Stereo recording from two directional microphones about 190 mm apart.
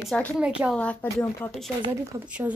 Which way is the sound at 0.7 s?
10° left (ahead or behind).